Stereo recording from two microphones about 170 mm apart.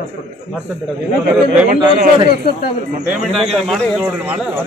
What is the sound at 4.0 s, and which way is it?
Speech, 10° right (ahead or behind).